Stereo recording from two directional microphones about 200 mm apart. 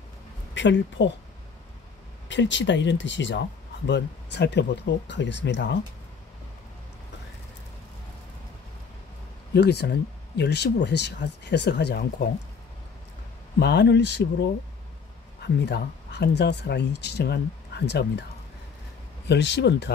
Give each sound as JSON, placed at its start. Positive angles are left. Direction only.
{"t": 0.6, "sound": "speech", "side_deg": 65}
{"t": 2.2, "sound": "speech", "side_deg": 65}
{"t": 9.5, "sound": "speech", "side_deg": 55}
{"t": 13.6, "sound": "speech", "side_deg": 60}
{"t": 15.4, "sound": "speech", "side_deg": 55}
{"t": 19.2, "sound": "speech", "side_deg": 60}